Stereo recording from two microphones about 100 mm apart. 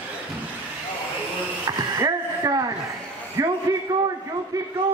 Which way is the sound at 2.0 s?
35° right (ahead or behind).